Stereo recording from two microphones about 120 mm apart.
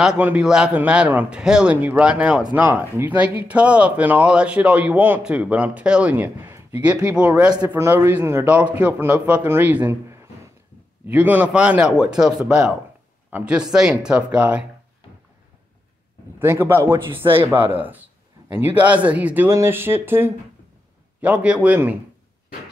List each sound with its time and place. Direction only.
0.0 s speech: 10° right (ahead or behind)
16.3 s a man's voice: 20° right (ahead or behind)